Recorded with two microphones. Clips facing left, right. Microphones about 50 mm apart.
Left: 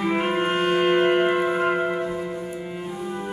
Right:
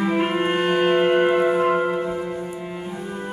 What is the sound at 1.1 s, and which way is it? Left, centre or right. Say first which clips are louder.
Music: right 2 dB; centre.